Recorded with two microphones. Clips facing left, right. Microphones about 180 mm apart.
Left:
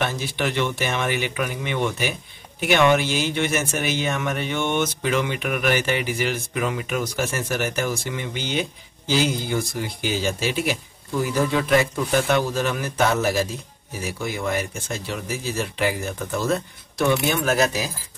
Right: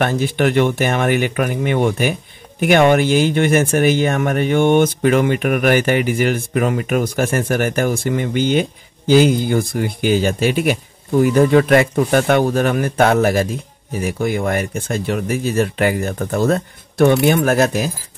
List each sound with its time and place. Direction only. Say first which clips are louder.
0.0 s speech: right 8 dB; 55° right (ahead or behind)